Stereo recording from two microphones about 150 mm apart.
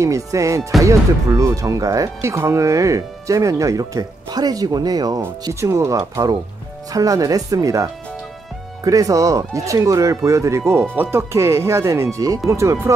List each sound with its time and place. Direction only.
0.0 s speech: 20° right (ahead or behind)